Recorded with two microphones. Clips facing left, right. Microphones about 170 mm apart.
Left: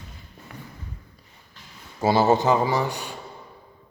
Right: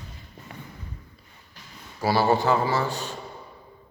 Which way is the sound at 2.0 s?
20° left (ahead or behind).